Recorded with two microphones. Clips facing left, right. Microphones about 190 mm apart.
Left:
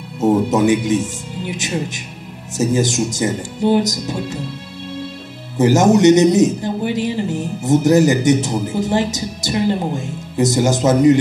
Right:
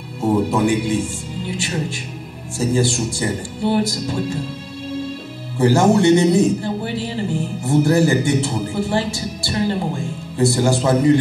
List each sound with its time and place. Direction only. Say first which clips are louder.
0.2 s music: left 3 dB; 20° left (ahead or behind)
1.4 s a man's voice: left 2 dB; 20° left (ahead or behind)
5.6 s a man's voice: left 2 dB; 20° left (ahead or behind)